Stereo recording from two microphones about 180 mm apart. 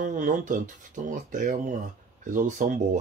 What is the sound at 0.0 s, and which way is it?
Speech, 45° right (ahead or behind).